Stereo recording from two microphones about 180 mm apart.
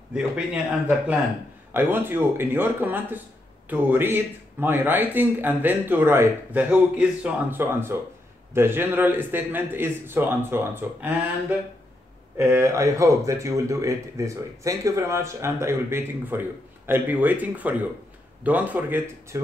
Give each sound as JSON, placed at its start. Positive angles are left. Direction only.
{"t": 0.7, "sound": "speech", "side_deg": -10}
{"t": 12.4, "sound": "speech", "side_deg": -15}